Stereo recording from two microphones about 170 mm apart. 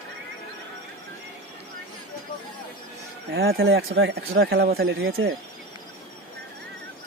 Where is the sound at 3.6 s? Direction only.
90° right; by 5.2 s 70° right (ahead or behind).